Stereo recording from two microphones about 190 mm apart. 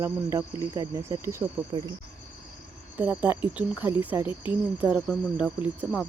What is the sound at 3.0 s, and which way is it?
Cricket, 10° right (ahead or behind).